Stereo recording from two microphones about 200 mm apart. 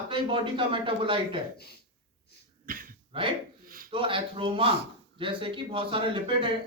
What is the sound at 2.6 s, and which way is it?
Cough, 45° right (ahead or behind).